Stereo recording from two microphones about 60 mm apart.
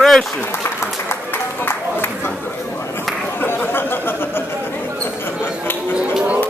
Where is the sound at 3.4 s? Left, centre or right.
Left.